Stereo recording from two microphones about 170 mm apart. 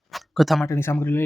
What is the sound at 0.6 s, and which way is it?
Speech, 15° left (ahead or behind).